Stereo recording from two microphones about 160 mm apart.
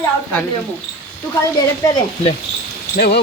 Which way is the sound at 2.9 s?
85° left.